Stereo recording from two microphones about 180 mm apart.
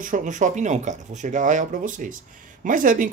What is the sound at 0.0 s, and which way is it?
Speech, 45° right (ahead or behind).